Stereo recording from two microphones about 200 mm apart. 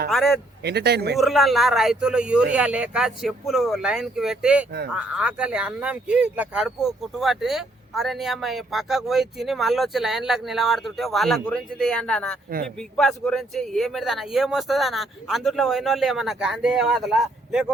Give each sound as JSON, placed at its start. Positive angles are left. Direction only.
{"t": 0.1, "sound": "a man's voice", "side_deg": 0}
{"t": 0.6, "sound": "speech", "side_deg": -55}
{"t": 1.1, "sound": "a man's voice", "side_deg": 0}